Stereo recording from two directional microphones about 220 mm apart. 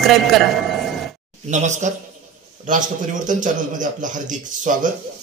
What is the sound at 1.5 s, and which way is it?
A man's voice, 35° right (ahead or behind).